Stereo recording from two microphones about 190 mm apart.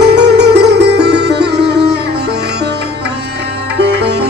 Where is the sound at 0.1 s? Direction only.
60° right (ahead or behind).